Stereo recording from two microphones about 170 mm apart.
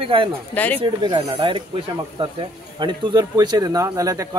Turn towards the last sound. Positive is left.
turn(degrees=-20)  # may be behind; listen again after turning